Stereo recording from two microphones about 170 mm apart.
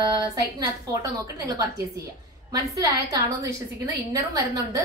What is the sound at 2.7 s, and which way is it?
A woman's voice, 20° right (ahead or behind).